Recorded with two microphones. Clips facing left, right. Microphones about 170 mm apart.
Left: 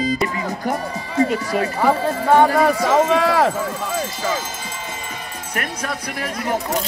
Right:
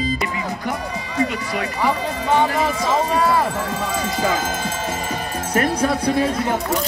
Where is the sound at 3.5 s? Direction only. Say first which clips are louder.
Even; 80° right; by 4.8 s 55° right (ahead or behind).